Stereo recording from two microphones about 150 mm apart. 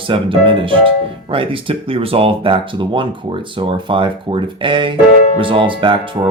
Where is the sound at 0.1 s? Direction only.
35° right (ahead or behind).